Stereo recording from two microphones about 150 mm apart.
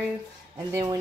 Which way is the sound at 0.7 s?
20° right (ahead or behind).